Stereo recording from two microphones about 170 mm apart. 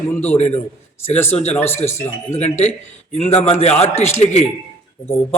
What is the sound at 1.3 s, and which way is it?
Speech, 40° left (ahead or behind).